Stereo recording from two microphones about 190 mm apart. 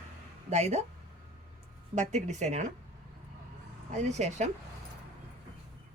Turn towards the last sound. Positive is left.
turn(degrees=-35)  # may be behind; listen again after turning